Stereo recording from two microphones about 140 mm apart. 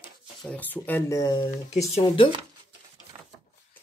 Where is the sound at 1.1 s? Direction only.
30° left (ahead or behind).